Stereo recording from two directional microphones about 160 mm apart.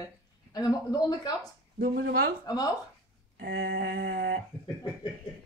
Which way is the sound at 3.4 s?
85° right.